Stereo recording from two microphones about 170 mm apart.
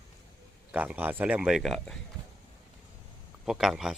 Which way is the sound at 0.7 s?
10° right (ahead or behind).